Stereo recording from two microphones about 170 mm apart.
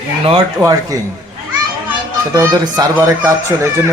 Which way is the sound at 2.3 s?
25° right (ahead or behind).